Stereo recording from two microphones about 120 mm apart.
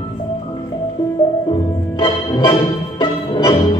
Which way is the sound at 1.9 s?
45° left (ahead or behind).